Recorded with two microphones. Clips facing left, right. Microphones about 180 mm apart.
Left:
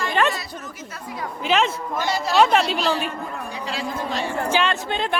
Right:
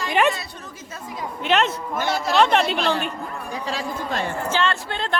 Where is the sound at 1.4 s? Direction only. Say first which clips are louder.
Even; centre (ahead or behind).